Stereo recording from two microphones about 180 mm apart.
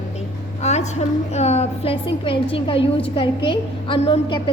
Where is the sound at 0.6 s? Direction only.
40° left (ahead or behind).